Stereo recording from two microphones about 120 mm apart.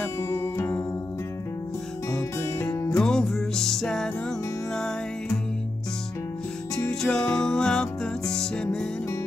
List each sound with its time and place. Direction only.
0.2 s music: 25° left (ahead or behind)
2.0 s music: 10° left (ahead or behind)
3.0 s music: 5° left (ahead or behind)
6.7 s music: 5° left (ahead or behind)